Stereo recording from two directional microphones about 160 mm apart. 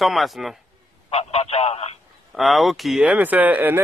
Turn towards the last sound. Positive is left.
turn(degrees=-10)  # may be behind; listen again after turning